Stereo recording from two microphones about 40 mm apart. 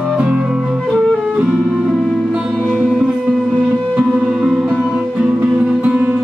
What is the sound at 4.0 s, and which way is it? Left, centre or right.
Music, right.